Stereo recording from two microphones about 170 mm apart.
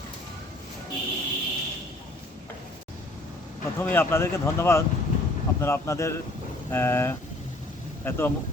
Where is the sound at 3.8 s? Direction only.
15° left (ahead or behind).